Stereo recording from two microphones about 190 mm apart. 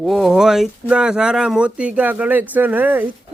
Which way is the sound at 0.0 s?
Centre (ahead or behind).